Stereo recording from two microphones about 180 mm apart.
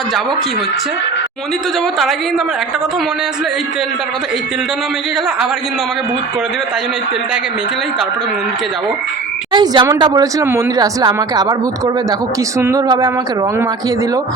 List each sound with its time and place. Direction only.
9.5 s speech: 25° right (ahead or behind)
12.5 s speech: 20° right (ahead or behind)